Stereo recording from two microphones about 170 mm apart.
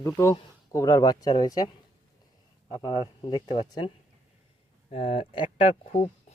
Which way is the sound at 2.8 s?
25° left (ahead or behind).